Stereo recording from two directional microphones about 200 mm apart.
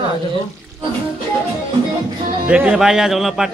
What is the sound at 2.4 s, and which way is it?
A man's voice, 5° right (ahead or behind).